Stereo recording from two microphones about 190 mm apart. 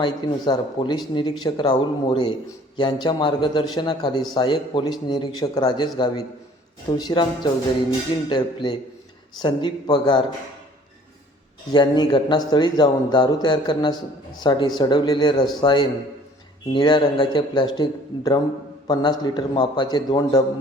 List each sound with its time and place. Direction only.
0.0 s a man's voice: 25° left (ahead or behind)
11.7 s a man's voice: 25° left (ahead or behind)